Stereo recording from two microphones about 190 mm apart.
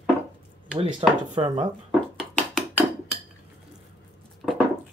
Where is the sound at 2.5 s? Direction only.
Centre (ahead or behind).